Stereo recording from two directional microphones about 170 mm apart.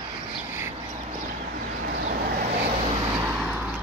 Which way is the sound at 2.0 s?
50° right (ahead or behind).